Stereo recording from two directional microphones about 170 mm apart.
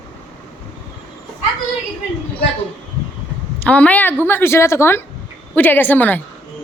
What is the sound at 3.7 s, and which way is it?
A woman's voice, 10° left (ahead or behind).